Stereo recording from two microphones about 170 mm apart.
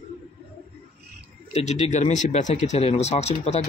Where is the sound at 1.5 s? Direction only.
40° left (ahead or behind).